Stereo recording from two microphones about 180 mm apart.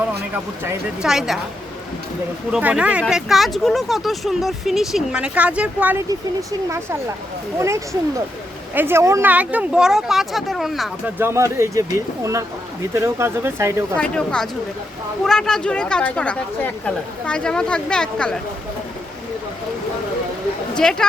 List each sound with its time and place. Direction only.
0.6 s speech: 5° right (ahead or behind)
2.5 s speech: 5° right (ahead or behind)
8.7 s speech: 10° right (ahead or behind)
11.2 s speech: 15° right (ahead or behind)
13.9 s speech: 5° left (ahead or behind)
20.7 s speech: 5° left (ahead or behind)